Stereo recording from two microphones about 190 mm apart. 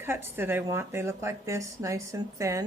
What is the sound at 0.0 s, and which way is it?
Speech, 10° right (ahead or behind).